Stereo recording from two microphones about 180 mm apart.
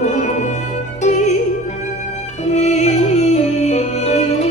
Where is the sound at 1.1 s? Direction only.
40° left (ahead or behind).